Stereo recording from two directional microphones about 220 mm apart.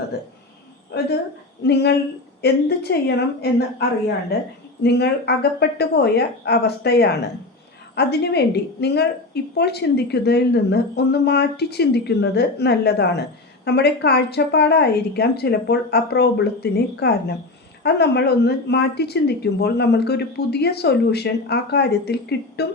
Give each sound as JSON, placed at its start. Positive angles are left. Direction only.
{"t": 1.6, "sound": "a woman's voice", "side_deg": 50}